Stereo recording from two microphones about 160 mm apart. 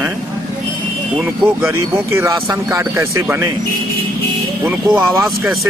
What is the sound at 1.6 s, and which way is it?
Speech, 15° right (ahead or behind).